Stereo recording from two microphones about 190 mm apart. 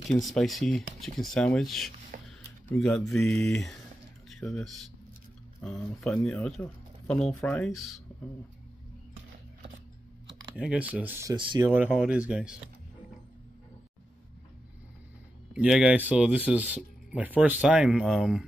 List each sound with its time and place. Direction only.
0.1 s speech: centre (ahead or behind)
10.5 s speech: 5° right (ahead or behind)
11.3 s speech: 25° right (ahead or behind)
11.6 s speech: 10° right (ahead or behind)
15.5 s speech: 5° right (ahead or behind)